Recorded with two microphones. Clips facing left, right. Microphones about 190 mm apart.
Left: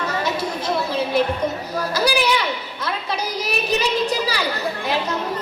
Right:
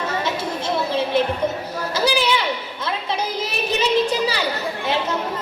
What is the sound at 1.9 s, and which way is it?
A woman's voice, 25° right (ahead or behind).